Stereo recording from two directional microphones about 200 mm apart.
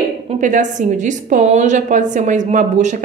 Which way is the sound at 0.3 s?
40° right (ahead or behind).